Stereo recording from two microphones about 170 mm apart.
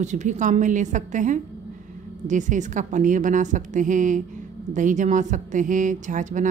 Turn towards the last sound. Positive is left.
turn(degrees=-45)  # may be behind; listen again after turning